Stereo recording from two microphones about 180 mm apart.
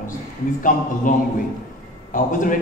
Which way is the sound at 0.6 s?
50° left (ahead or behind).